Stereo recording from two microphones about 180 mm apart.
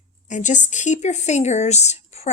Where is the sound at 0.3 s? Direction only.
45° left (ahead or behind).